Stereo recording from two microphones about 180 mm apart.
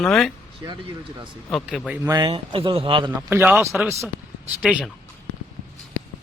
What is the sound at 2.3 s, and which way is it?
Speech, 30° right (ahead or behind).